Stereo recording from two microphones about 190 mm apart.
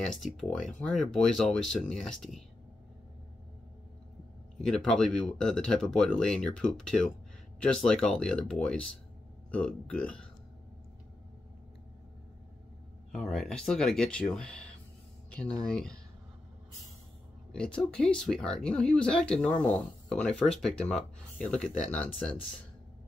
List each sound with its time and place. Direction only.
0.0 s speech: 5° left (ahead or behind)
4.6 s speech: 5° left (ahead or behind)
13.1 s speech: 5° left (ahead or behind)
17.5 s speech: 5° left (ahead or behind)